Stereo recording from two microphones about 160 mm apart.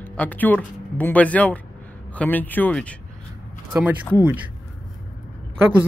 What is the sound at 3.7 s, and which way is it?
Speech, 10° right (ahead or behind).